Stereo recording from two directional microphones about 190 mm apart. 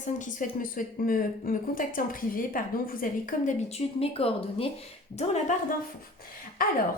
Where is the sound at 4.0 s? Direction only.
30° left (ahead or behind).